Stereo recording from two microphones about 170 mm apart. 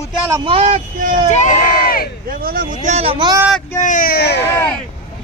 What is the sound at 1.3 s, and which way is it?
Crowd, 45° left (ahead or behind).